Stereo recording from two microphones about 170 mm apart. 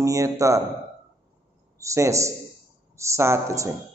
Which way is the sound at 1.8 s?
15° right (ahead or behind).